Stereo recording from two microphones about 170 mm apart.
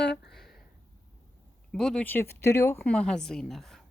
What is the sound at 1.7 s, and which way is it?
Speech, centre (ahead or behind).